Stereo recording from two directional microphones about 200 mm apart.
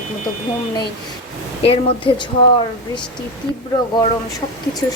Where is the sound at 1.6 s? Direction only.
30° left (ahead or behind).